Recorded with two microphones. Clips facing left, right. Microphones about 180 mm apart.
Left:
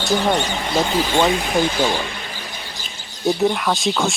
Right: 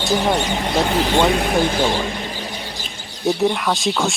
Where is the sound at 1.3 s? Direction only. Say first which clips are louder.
Right 1 dB; 55° right (ahead or behind).